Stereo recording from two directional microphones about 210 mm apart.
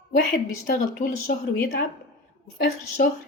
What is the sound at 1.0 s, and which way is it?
Speech, 40° left (ahead or behind).